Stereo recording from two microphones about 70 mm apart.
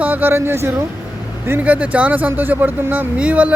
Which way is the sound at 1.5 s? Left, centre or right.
Right.